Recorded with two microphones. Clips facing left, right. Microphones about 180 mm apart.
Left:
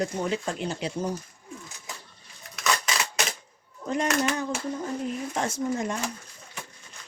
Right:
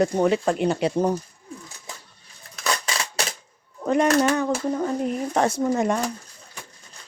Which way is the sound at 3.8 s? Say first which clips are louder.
Right 8 dB; 65° right (ahead or behind).